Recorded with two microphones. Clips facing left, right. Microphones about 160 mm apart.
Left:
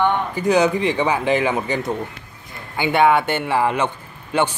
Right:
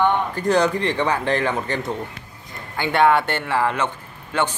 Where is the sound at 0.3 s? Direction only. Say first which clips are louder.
Left 2 dB; 5° left (ahead or behind).